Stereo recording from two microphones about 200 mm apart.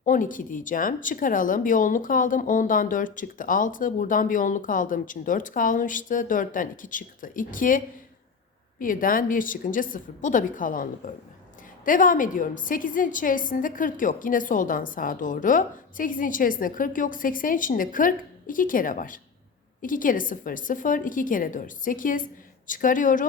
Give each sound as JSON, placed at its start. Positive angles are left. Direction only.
{"t": 0.0, "sound": "speech", "side_deg": 40}
{"t": 8.8, "sound": "a woman's voice", "side_deg": 45}